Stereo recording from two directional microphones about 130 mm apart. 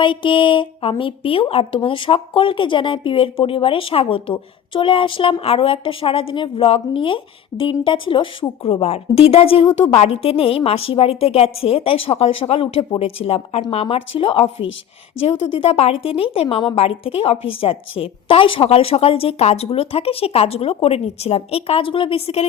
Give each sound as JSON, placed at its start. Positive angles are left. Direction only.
{"t": 0.0, "sound": "speech", "side_deg": 40}